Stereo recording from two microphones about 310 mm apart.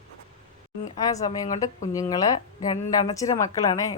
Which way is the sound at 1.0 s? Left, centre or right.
Centre.